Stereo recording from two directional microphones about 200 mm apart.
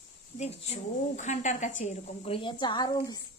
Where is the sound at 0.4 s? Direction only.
30° left (ahead or behind).